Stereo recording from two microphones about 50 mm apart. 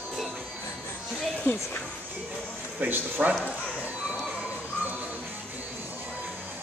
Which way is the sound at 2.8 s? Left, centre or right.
Right.